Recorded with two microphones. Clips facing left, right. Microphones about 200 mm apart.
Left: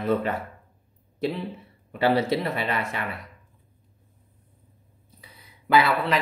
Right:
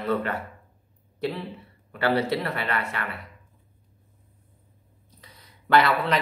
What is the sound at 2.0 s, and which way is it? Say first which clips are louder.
Speech: left 2 dB; 20° left (ahead or behind).